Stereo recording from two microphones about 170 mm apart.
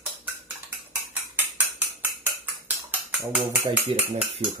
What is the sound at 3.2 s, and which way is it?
Speech, 5° right (ahead or behind).